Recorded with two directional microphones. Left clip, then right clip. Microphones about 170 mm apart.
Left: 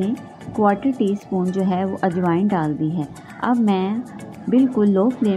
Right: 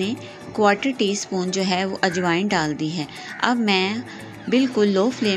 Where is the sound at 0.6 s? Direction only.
25° right (ahead or behind).